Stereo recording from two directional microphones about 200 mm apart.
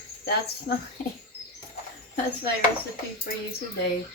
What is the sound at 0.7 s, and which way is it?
Speech, 55° left (ahead or behind).